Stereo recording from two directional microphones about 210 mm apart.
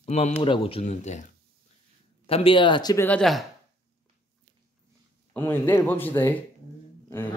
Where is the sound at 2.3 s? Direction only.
25° left (ahead or behind); by 3.4 s 5° left (ahead or behind).